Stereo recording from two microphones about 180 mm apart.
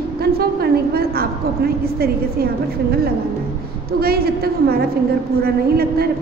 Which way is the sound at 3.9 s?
60° right (ahead or behind).